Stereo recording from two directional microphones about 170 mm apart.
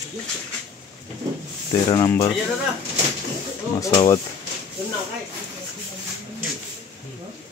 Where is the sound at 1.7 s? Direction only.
20° left (ahead or behind).